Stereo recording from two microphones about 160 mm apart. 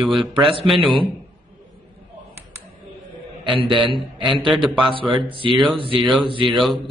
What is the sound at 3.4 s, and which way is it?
A man's voice, 30° right (ahead or behind).